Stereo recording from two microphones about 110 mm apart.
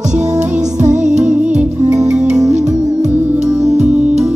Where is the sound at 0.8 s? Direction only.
90° right.